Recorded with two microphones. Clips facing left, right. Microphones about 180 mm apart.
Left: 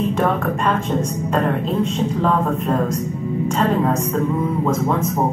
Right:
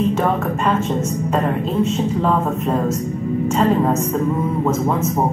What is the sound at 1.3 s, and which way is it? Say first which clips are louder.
Speech: left 1 dB; 5° right (ahead or behind).